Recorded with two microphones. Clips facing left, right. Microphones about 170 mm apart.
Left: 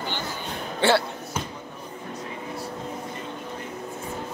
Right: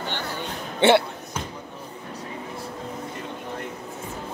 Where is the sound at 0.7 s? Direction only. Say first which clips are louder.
Right 4 dB; 20° right (ahead or behind).